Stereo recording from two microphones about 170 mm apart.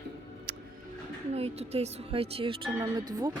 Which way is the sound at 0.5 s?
65° right (ahead or behind).